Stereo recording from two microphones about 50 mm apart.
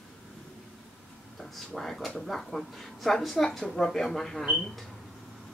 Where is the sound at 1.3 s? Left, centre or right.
Centre.